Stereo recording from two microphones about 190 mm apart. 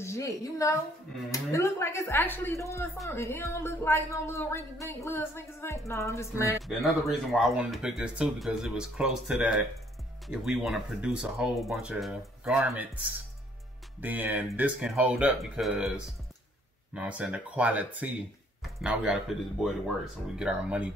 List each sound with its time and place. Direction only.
0.0 s a woman's voice: 15° left (ahead or behind)
6.8 s speech: centre (ahead or behind)
16.9 s speech: 5° right (ahead or behind)